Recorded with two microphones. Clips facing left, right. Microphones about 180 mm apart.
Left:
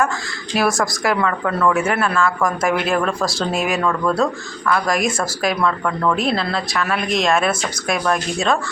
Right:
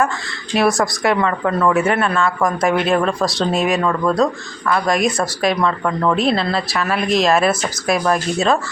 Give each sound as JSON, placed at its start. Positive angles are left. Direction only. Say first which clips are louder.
{"t": 0.5, "sound": "speech", "louder": "right 3 dB", "side_deg": 0}
{"t": 1.5, "sound": "speech", "louder": "right 1 dB", "side_deg": -15}
{"t": 1.7, "sound": "speech", "louder": "right 2 dB", "side_deg": 0}
{"t": 5.8, "sound": "speech", "louder": "right 2 dB", "side_deg": -10}
{"t": 6.1, "sound": "speech", "louder": "right 3 dB", "side_deg": 0}